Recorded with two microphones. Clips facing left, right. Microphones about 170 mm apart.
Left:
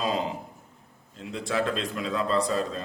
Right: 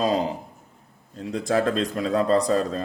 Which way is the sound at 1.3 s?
40° right (ahead or behind).